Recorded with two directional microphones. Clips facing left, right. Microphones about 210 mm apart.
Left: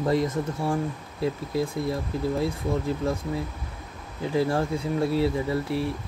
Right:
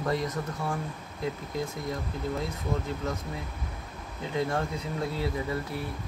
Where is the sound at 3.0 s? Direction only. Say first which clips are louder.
Left 6 dB; 30° left (ahead or behind).